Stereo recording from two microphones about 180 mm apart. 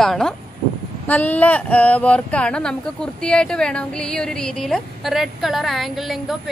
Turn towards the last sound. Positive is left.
turn(degrees=0)  # may be behind; listen again after turning